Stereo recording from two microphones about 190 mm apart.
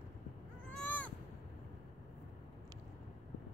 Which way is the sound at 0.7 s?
5° left (ahead or behind).